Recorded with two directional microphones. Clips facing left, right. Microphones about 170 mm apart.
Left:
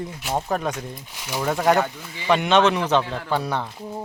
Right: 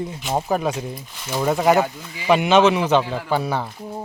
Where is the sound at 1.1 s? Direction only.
10° left (ahead or behind).